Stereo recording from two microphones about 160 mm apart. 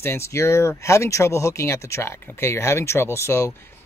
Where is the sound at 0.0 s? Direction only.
15° left (ahead or behind).